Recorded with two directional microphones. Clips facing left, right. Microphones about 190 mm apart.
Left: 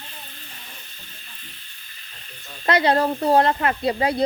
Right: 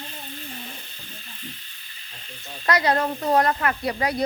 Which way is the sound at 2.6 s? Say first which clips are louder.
Left 3 dB; 25° left (ahead or behind).